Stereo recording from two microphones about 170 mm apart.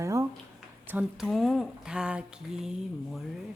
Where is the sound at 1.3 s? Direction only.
Centre (ahead or behind).